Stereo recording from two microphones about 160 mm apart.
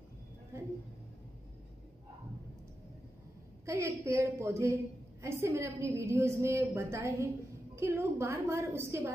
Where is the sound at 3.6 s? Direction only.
20° right (ahead or behind).